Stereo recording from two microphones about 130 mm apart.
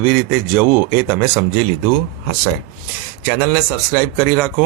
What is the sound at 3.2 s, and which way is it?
Speech, 10° left (ahead or behind).